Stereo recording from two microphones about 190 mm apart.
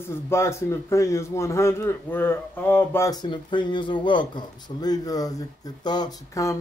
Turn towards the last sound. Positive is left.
turn(degrees=15)  # may be behind; listen again after turning